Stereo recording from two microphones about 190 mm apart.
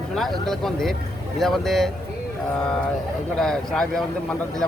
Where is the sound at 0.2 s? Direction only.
Centre (ahead or behind).